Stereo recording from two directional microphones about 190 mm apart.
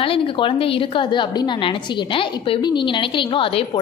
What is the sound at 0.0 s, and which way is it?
A woman's voice, 30° left (ahead or behind).